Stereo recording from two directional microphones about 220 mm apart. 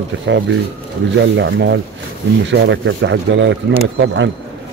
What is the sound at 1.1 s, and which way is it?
Speech, 55° right (ahead or behind).